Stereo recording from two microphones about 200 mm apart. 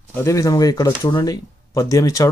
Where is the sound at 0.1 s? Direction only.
15° left (ahead or behind).